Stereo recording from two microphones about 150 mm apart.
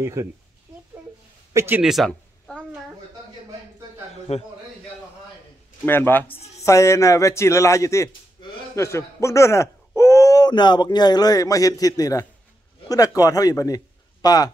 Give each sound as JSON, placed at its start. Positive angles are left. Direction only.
{"t": 0.0, "sound": "speech", "side_deg": -20}
{"t": 1.5, "sound": "speech", "side_deg": -20}
{"t": 1.8, "sound": "a sound", "side_deg": 0}
{"t": 4.3, "sound": "a man's voice", "side_deg": 45}
{"t": 5.9, "sound": "speech", "side_deg": 15}
{"t": 6.2, "sound": "speech", "side_deg": 40}
{"t": 6.6, "sound": "a man's voice", "side_deg": 20}